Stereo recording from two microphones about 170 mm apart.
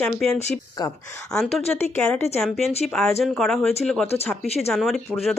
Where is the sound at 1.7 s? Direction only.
5° left (ahead or behind).